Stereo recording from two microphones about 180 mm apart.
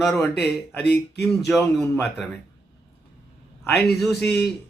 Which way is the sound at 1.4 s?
5° left (ahead or behind).